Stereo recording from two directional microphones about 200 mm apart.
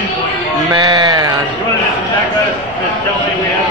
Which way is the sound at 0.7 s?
20° right (ahead or behind).